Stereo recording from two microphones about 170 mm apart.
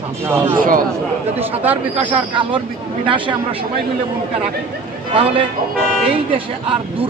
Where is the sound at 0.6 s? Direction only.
55° right (ahead or behind).